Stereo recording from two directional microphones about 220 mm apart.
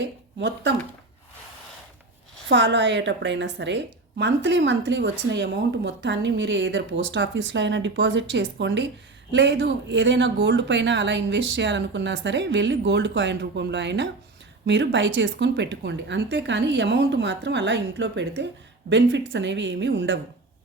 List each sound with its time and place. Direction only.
0.0 s speech: 55° right (ahead or behind)
2.5 s a woman's voice: 55° right (ahead or behind)